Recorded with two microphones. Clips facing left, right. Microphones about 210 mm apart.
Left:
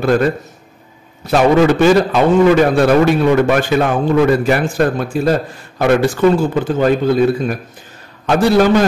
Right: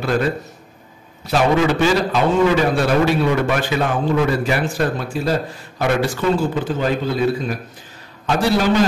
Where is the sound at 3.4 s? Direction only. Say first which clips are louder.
Left 6 dB; 50° left (ahead or behind).